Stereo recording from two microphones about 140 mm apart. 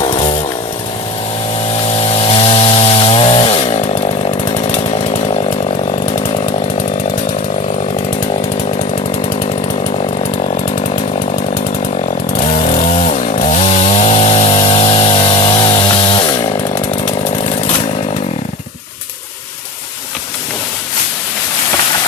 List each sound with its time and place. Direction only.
1.9 s chainsaw: 45° left (ahead or behind)
10.4 s chainsaw: 50° left (ahead or behind)
12.6 s chainsaw: 55° left (ahead or behind); by 16.5 s 30° left (ahead or behind)